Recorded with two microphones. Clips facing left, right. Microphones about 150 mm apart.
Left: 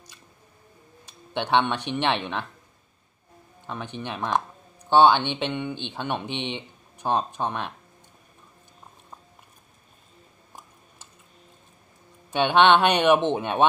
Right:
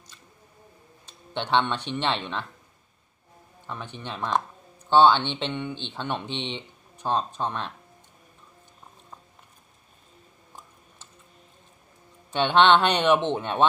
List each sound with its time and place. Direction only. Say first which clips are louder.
1.0 s speech: left 2 dB; 15° left (ahead or behind)
3.6 s speech: left 3 dB; 15° left (ahead or behind)
12.3 s speech: left 1 dB; 15° left (ahead or behind)